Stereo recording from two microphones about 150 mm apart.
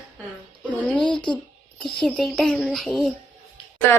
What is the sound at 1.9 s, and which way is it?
Speech, 5° left (ahead or behind).